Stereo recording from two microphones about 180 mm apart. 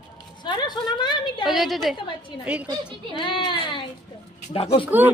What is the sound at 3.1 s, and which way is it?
Speech, 25° left (ahead or behind).